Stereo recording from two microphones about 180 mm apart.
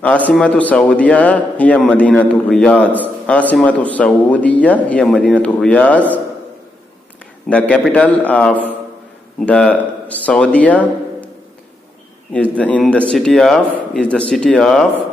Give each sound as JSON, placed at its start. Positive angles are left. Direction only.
{"t": 0.3, "sound": "speech", "side_deg": 5}
{"t": 7.4, "sound": "speech", "side_deg": 5}
{"t": 12.3, "sound": "speech", "side_deg": 5}